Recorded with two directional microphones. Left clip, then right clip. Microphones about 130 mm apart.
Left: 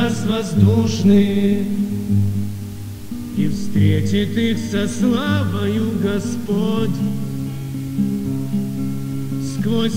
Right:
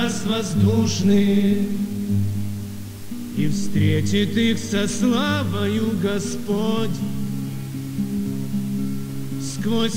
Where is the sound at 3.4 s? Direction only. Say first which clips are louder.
Left 2 dB; 30° right (ahead or behind).